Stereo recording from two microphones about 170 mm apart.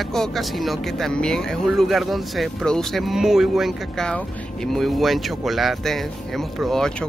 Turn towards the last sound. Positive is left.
turn(degrees=0)  # may be behind; listen again after turning